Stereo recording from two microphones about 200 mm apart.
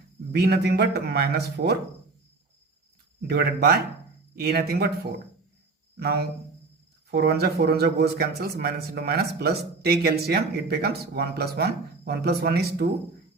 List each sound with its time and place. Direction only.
0.3 s speech: 55° right (ahead or behind)
3.2 s speech: 55° right (ahead or behind)
6.0 s speech: 50° right (ahead or behind)